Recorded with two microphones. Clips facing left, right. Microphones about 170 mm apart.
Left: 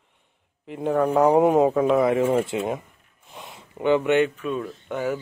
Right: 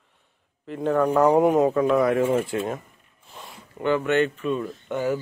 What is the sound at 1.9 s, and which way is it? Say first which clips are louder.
Speech: left 1 dB; 20° left (ahead or behind).